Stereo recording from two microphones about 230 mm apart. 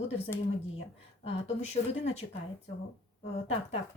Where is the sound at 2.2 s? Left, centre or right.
Left.